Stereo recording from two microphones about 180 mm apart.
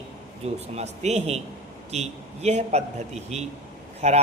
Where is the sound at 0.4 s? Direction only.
35° right (ahead or behind).